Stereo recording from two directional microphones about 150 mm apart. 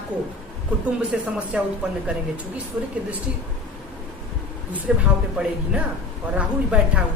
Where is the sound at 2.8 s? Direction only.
10° right (ahead or behind).